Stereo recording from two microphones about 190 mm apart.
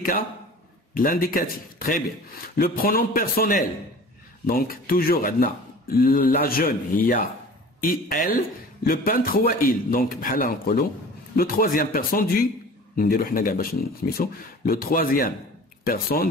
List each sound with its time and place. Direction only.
0.9 s speech: 45° left (ahead or behind)